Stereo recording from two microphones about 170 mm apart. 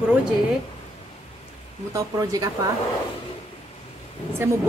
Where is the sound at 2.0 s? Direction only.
20° right (ahead or behind).